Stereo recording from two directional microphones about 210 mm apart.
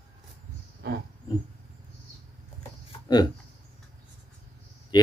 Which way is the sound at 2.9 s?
20° left (ahead or behind).